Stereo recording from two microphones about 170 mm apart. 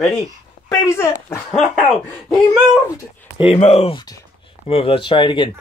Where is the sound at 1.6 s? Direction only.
Centre (ahead or behind).